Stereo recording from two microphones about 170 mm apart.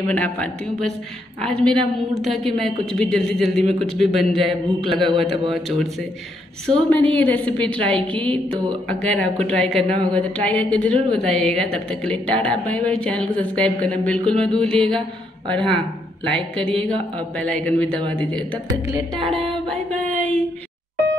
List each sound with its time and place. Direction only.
0.1 s a woman's voice: 5° left (ahead or behind)
4.8 s a man's voice: 30° right (ahead or behind)
5.1 s a woman's voice: centre (ahead or behind)
19.2 s a woman's voice: centre (ahead or behind)